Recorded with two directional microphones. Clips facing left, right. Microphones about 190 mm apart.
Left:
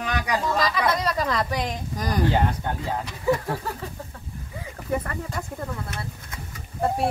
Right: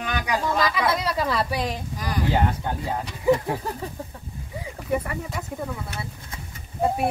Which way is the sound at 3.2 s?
15° right (ahead or behind).